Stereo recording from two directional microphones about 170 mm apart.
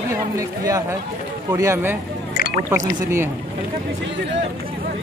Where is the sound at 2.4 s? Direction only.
60° left (ahead or behind).